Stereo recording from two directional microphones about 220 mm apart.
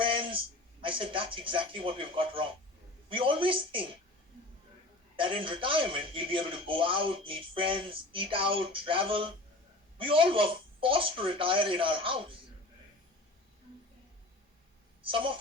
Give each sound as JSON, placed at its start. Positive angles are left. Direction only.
{"t": 0.0, "sound": "a sound", "side_deg": -25}
{"t": 0.8, "sound": "speech", "side_deg": -25}
{"t": 5.1, "sound": "speech", "side_deg": -25}
{"t": 15.0, "sound": "speech", "side_deg": -25}